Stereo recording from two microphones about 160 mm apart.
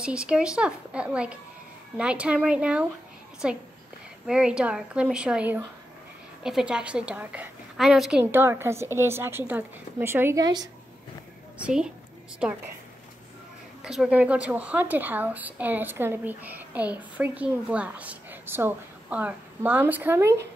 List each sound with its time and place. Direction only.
0.0 s a woman's voice: 5° right (ahead or behind)
10.4 s a woman's voice: 25° right (ahead or behind)
11.5 s a woman's voice: 5° right (ahead or behind)
13.8 s a woman's voice: 5° right (ahead or behind)